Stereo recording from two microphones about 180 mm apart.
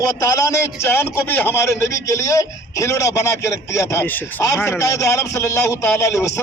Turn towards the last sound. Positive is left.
turn(degrees=15)  # may be behind; listen again after turning